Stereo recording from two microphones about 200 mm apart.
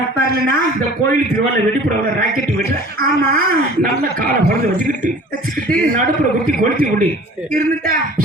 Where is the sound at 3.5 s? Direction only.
45° right (ahead or behind).